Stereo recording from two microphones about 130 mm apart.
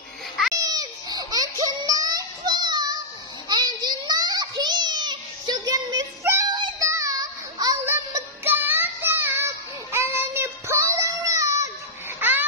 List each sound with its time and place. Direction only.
0.6 s a sound: 30° right (ahead or behind)
6.5 s child singing: 35° right (ahead or behind)
6.9 s child singing: 25° right (ahead or behind)
7.8 s music: 20° right (ahead or behind)
9.9 s child singing: 20° right (ahead or behind)
12.2 s a sound: 15° right (ahead or behind)